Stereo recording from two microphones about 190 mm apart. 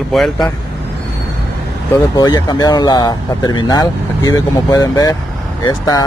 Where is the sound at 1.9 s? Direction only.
20° left (ahead or behind).